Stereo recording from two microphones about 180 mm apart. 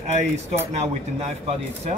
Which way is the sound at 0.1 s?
40° right (ahead or behind).